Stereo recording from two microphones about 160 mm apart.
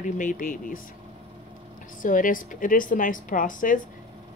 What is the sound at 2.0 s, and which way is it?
A woman's voice, 55° left (ahead or behind).